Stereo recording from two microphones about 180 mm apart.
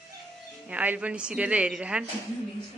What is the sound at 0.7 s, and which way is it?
Speech, 10° right (ahead or behind).